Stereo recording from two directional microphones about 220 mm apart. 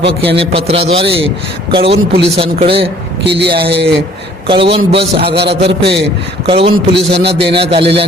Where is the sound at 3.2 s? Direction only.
50° right (ahead or behind).